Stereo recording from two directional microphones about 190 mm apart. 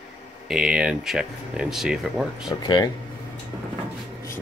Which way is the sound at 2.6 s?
20° left (ahead or behind).